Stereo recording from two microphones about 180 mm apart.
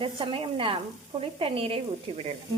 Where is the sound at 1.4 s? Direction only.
30° right (ahead or behind).